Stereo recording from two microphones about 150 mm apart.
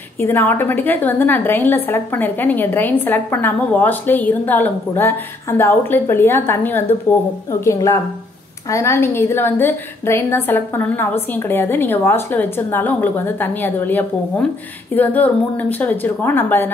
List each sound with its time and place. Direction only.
0.2 s a woman's voice: 15° left (ahead or behind)